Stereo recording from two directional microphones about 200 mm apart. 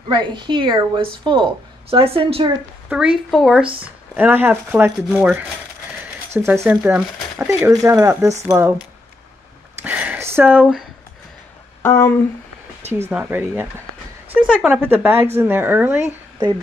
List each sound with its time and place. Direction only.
0.1 s speech: 20° right (ahead or behind)
2.9 s a woman's voice: 5° right (ahead or behind)
3.6 s speech: 25° right (ahead or behind)
4.1 s speech: 10° right (ahead or behind)
7.3 s speech: 15° right (ahead or behind)
9.8 s a sound: 5° right (ahead or behind)
11.8 s speech: 10° left (ahead or behind)
12.9 s speech: 10° right (ahead or behind)